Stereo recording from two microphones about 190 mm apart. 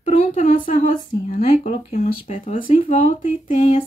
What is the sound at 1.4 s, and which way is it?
Speech, 30° left (ahead or behind).